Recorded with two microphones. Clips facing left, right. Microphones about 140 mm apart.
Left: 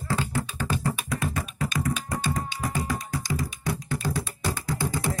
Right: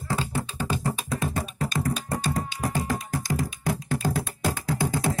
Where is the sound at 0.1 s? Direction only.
20° right (ahead or behind).